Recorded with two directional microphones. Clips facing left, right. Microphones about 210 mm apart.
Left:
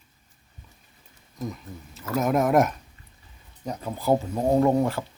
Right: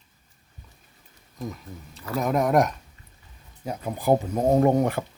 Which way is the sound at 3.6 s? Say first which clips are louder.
Right 1 dB; 10° right (ahead or behind).